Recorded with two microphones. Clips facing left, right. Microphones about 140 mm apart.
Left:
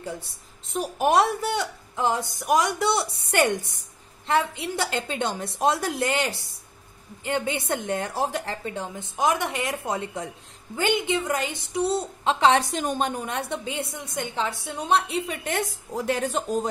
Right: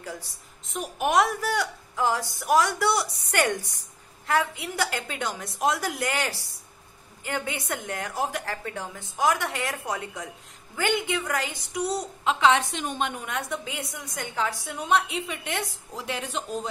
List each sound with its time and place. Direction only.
0.7 s a woman's voice: 35° left (ahead or behind)